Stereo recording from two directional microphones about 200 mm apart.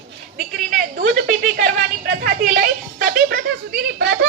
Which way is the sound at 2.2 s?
45° right (ahead or behind).